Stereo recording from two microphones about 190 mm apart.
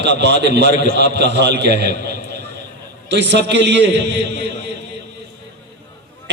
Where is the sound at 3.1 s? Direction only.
65° right (ahead or behind).